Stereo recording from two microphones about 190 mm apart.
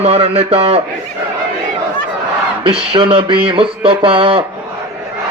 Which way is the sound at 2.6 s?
30° right (ahead or behind).